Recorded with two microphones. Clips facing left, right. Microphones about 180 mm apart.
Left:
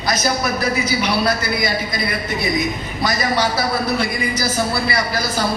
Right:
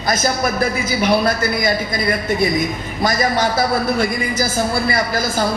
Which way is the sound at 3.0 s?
50° right (ahead or behind).